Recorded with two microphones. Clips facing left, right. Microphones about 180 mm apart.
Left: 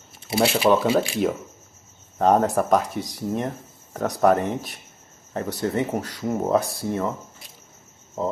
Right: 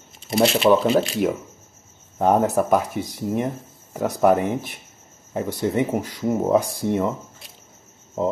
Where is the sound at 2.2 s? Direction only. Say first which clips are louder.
Right 1 dB; 10° right (ahead or behind).